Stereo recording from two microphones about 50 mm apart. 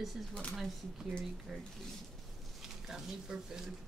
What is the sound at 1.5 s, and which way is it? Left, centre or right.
A woman's voice, centre.